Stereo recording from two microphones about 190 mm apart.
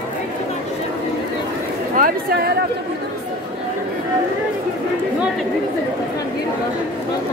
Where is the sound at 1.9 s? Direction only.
50° right (ahead or behind).